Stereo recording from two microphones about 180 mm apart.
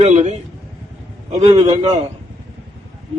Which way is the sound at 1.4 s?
35° right (ahead or behind).